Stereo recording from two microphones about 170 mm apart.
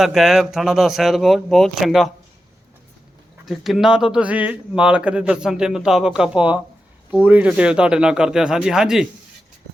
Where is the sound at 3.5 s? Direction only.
Centre (ahead or behind).